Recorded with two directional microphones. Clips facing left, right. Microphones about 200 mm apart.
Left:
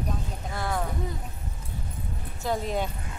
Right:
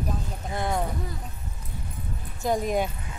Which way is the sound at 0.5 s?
20° right (ahead or behind).